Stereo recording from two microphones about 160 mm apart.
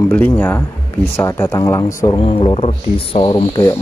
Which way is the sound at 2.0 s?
30° left (ahead or behind).